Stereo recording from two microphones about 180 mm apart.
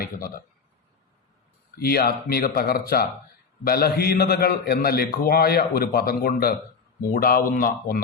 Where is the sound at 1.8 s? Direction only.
60° left (ahead or behind).